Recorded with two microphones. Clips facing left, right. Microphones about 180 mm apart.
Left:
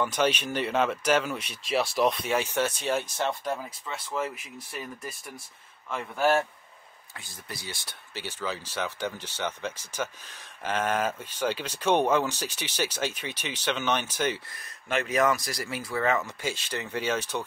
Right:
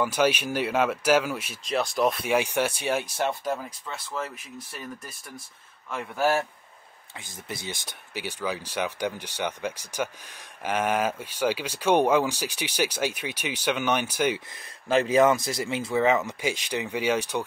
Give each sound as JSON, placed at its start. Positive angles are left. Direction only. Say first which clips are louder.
{"t": 0.0, "sound": "speech", "louder": "right 2 dB", "side_deg": -10}
{"t": 3.8, "sound": "speech", "louder": "left 2 dB", "side_deg": 5}
{"t": 5.9, "sound": "speech", "louder": "even", "side_deg": -5}
{"t": 7.2, "sound": "speech", "louder": "right 4 dB", "side_deg": -20}
{"t": 14.9, "sound": "speech", "louder": "right 5 dB", "side_deg": -30}